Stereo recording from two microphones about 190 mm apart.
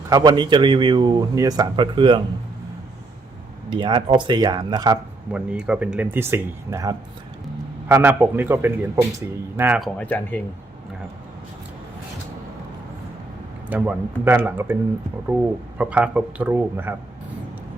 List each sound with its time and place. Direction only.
0.1 s a man's voice: 20° right (ahead or behind)
3.8 s a man's voice: 25° right (ahead or behind)
5.3 s speech: 5° right (ahead or behind)
10.0 s speech: 10° left (ahead or behind)
13.7 s speech: 10° right (ahead or behind)
15.8 s speech: 5° right (ahead or behind)